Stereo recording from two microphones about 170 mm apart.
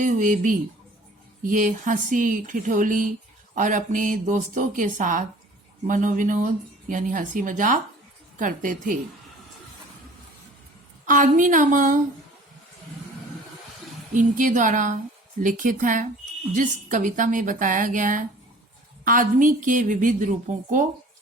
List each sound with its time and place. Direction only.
0.0 s speech: 50° right (ahead or behind)
11.0 s speech: 50° right (ahead or behind)
14.1 s speech: 50° right (ahead or behind)